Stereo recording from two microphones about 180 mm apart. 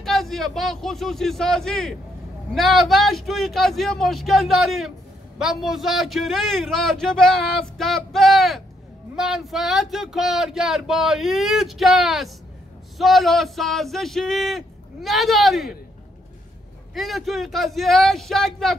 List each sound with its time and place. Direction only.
0.0 s a man's voice: centre (ahead or behind)
16.9 s a man's voice: centre (ahead or behind)